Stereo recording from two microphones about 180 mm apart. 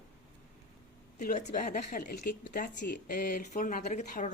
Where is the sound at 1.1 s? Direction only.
40° left (ahead or behind).